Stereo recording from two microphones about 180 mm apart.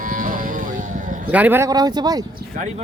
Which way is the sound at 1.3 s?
10° right (ahead or behind).